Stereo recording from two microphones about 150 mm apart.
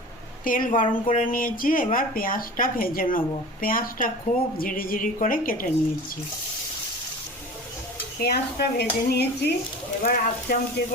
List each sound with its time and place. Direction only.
0.4 s speech: 65° left (ahead or behind)
8.2 s speech: 90° left
10.0 s speech: 75° left (ahead or behind)